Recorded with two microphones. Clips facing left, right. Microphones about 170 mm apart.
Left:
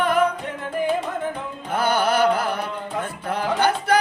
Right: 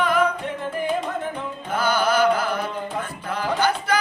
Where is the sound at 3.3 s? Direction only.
60° left (ahead or behind).